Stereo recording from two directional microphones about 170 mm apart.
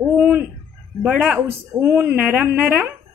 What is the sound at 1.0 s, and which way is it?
A woman's voice, 10° right (ahead or behind).